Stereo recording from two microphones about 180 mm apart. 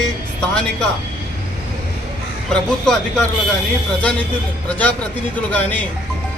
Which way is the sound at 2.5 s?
5° left (ahead or behind).